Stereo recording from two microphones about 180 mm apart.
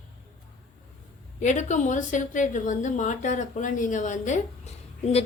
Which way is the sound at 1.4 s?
40° left (ahead or behind).